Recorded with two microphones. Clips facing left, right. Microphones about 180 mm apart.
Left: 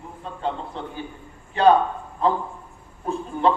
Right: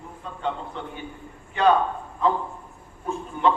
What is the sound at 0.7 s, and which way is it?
Speech, 35° left (ahead or behind).